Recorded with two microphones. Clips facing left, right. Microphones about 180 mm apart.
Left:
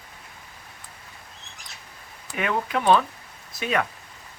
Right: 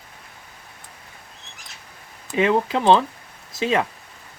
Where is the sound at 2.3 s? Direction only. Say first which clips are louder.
Right 6 dB; 25° right (ahead or behind).